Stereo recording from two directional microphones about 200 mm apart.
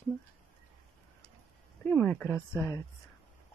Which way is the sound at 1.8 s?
10° left (ahead or behind).